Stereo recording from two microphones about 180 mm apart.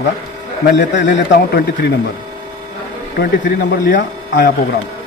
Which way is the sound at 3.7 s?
55° left (ahead or behind).